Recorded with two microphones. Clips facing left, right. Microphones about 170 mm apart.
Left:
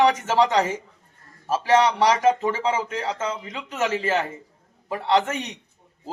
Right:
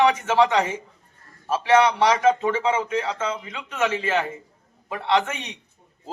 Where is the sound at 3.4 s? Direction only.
35° left (ahead or behind).